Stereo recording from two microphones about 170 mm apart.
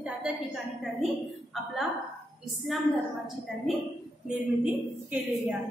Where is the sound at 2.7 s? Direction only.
Centre (ahead or behind).